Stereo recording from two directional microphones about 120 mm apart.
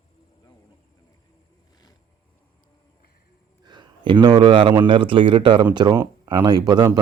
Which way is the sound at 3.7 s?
40° right (ahead or behind).